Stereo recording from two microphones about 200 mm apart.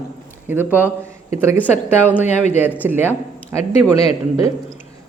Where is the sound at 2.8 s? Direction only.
10° right (ahead or behind).